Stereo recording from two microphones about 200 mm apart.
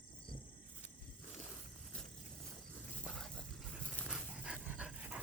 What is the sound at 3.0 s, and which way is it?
Dog, 5° left (ahead or behind).